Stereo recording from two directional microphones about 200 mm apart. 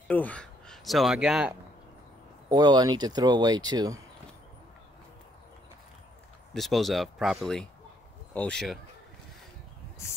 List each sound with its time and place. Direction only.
0.1 s speech: 5° left (ahead or behind)
2.5 s speech: 20° right (ahead or behind)
6.5 s speech: centre (ahead or behind)